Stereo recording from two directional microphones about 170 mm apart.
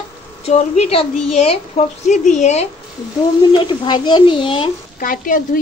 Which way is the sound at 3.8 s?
25° left (ahead or behind).